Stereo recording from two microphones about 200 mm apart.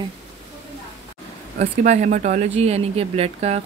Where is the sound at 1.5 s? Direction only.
35° right (ahead or behind).